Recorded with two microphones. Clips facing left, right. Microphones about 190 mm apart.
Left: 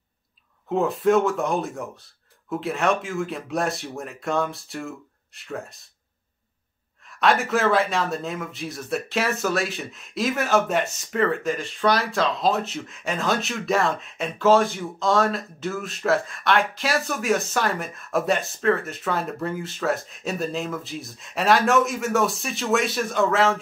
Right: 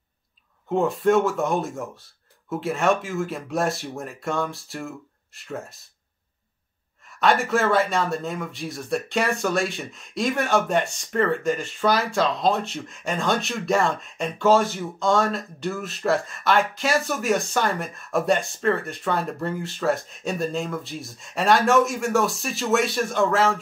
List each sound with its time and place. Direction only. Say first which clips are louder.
0.7 s speech: even; centre (ahead or behind)
7.1 s speech: right 1 dB; centre (ahead or behind)